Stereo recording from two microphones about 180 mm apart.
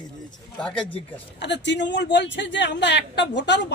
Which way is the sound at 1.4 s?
75° left (ahead or behind).